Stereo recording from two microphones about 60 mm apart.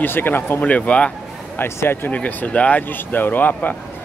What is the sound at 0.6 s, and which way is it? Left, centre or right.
Speech, left.